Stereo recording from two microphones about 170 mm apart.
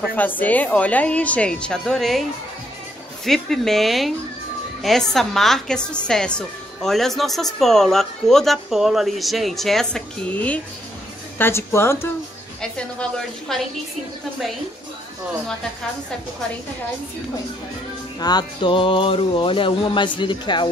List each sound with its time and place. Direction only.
0.1 s speech: 10° left (ahead or behind)
3.3 s a woman's voice: centre (ahead or behind)
13.5 s a woman's voice: centre (ahead or behind)
18.2 s music: 25° left (ahead or behind)